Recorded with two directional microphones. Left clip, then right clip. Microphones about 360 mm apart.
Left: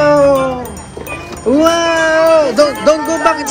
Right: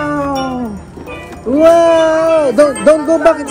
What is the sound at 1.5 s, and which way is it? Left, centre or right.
Speech, centre.